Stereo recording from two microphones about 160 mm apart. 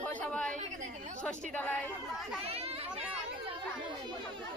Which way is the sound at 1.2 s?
10° left (ahead or behind).